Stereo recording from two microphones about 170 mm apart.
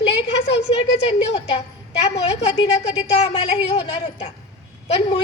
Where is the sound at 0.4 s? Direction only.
35° left (ahead or behind).